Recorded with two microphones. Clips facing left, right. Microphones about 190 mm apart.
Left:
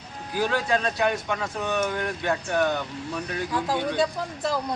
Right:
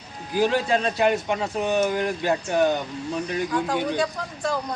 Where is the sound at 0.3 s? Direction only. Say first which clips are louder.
Right 3 dB; 25° right (ahead or behind).